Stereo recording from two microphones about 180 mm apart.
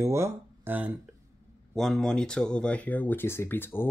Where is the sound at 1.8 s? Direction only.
Centre (ahead or behind).